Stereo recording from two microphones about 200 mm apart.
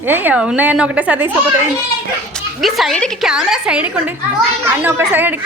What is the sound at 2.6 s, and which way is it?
A woman's voice, centre (ahead or behind).